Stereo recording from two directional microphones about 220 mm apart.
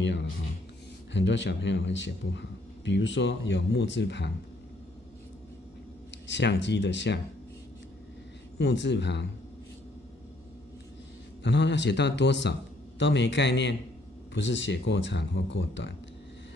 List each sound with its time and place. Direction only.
0.0 s a man's voice: 55° left (ahead or behind)
6.2 s a man's voice: 55° left (ahead or behind)
8.5 s a man's voice: 50° left (ahead or behind)
11.4 s a man's voice: 55° left (ahead or behind)